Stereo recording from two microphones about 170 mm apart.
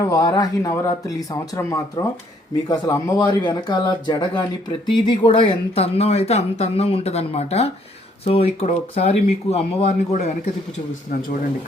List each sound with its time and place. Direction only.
0.0 s speech: 20° left (ahead or behind); by 10.5 s 40° left (ahead or behind)
11.1 s speech: 55° left (ahead or behind)